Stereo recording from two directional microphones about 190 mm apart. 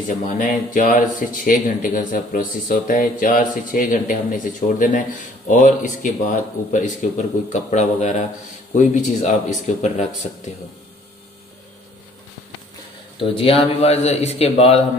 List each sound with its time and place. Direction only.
0.2 s speech: 40° left (ahead or behind)
13.2 s speech: 30° left (ahead or behind)